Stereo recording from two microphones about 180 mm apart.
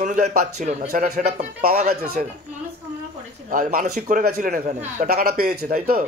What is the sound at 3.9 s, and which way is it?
A man's voice, 40° right (ahead or behind).